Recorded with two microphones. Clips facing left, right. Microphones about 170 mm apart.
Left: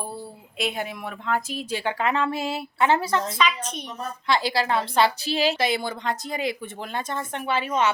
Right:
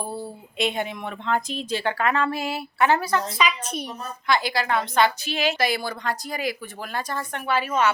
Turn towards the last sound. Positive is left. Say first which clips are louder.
# right 1 dB
turn(degrees=25)  # may be behind; listen again after turning